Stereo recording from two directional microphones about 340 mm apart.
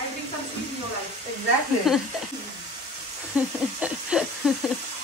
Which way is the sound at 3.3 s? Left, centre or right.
Centre.